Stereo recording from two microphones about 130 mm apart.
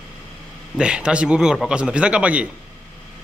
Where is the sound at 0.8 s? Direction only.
5° right (ahead or behind).